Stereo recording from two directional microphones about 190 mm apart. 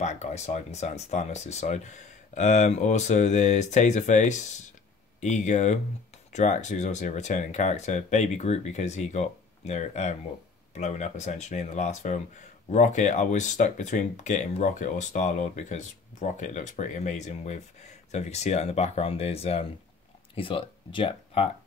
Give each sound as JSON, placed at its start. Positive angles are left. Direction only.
{"t": 0.0, "sound": "speech", "side_deg": 35}